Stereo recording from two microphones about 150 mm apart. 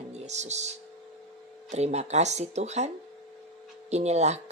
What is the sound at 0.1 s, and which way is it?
Speech, 50° right (ahead or behind).